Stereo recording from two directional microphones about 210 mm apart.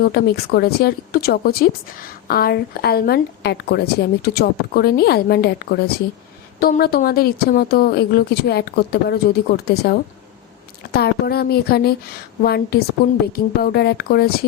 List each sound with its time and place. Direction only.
0.0 s a woman's voice: 50° left (ahead or behind)